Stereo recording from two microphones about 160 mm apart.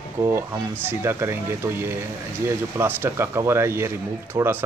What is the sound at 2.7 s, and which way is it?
Speech, 15° right (ahead or behind).